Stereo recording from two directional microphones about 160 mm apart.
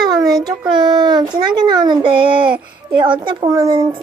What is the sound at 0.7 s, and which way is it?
A woman's voice, 25° right (ahead or behind).